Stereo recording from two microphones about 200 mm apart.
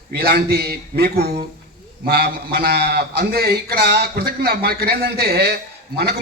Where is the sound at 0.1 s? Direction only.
55° right (ahead or behind).